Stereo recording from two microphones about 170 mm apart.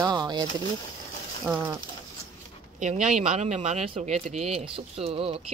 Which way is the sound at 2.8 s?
45° right (ahead or behind).